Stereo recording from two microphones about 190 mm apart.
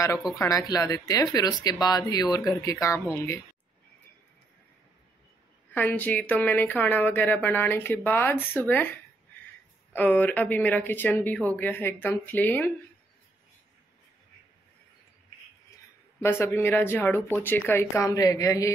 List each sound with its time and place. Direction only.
0.4 s speech: 20° left (ahead or behind)
5.7 s speech: 10° left (ahead or behind)
16.2 s speech: 10° left (ahead or behind)